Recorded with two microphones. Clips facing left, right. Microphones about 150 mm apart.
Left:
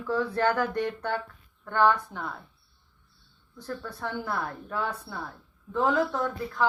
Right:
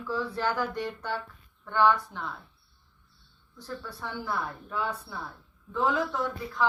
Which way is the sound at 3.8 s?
55° left (ahead or behind).